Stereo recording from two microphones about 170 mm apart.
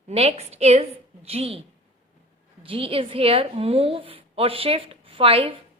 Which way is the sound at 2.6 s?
30° right (ahead or behind).